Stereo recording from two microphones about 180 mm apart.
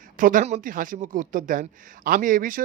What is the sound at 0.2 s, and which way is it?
Speech, 50° right (ahead or behind).